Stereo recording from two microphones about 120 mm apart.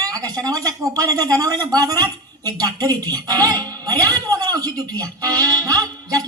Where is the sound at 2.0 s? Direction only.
35° right (ahead or behind).